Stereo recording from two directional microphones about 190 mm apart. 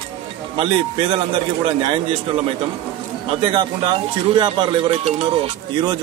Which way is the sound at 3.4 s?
25° right (ahead or behind).